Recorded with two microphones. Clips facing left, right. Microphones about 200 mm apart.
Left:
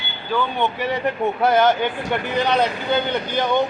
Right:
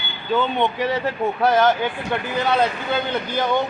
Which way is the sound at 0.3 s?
25° right (ahead or behind).